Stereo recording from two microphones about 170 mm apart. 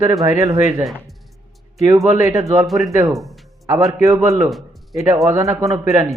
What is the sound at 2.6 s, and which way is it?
Speech, centre (ahead or behind).